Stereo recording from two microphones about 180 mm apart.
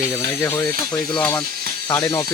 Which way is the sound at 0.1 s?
15° left (ahead or behind).